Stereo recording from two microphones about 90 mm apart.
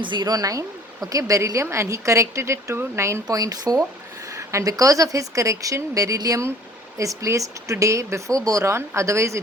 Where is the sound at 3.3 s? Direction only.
40° right (ahead or behind).